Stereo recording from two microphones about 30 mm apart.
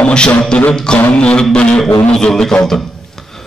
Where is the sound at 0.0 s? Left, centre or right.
Left.